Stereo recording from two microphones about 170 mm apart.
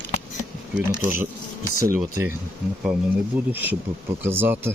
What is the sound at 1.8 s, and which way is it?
Speech, 15° right (ahead or behind).